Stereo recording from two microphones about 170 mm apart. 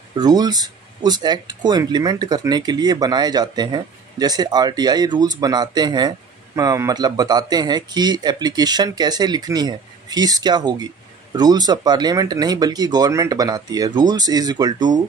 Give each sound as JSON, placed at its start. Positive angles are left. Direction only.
{"t": 0.1, "sound": "speech", "side_deg": -25}